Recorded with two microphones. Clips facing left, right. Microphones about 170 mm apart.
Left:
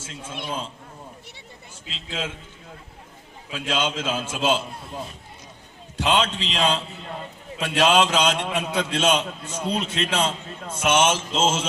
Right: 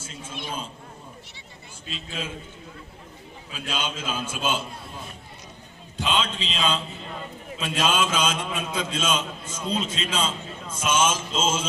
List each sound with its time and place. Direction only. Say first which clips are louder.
0.3 s a man's voice: left 3 dB; 75° left (ahead or behind)
1.9 s a man's voice: left 2 dB; 90° left
3.5 s a man's voice: left 6 dB; 90° left
6.0 s a man's voice: left 4 dB; 75° left (ahead or behind)